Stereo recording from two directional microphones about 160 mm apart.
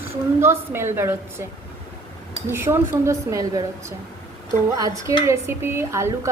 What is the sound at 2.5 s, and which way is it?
A woman's voice, 15° right (ahead or behind).